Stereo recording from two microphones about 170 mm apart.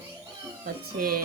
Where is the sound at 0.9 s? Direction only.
60° right (ahead or behind).